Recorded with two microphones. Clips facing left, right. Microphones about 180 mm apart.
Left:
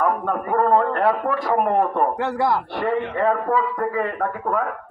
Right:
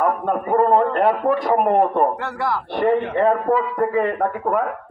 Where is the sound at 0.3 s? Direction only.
20° right (ahead or behind).